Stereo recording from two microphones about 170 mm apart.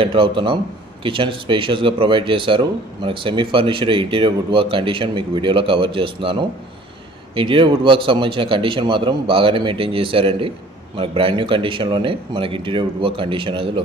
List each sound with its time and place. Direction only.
0.0 s speech: 30° right (ahead or behind)